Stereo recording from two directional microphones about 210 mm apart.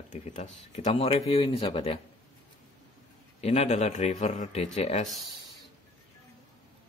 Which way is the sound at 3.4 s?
30° left (ahead or behind).